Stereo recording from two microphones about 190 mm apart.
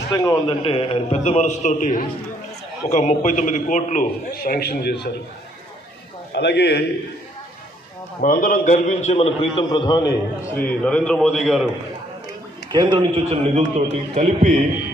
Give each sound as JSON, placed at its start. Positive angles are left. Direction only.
{"t": 0.1, "sound": "a man's voice", "side_deg": 20}
{"t": 4.4, "sound": "a man's voice", "side_deg": 55}
{"t": 6.3, "sound": "a man's voice", "side_deg": 60}
{"t": 8.2, "sound": "a man's voice", "side_deg": 50}
{"t": 10.5, "sound": "a man's voice", "side_deg": 10}
{"t": 12.7, "sound": "a man's voice", "side_deg": -25}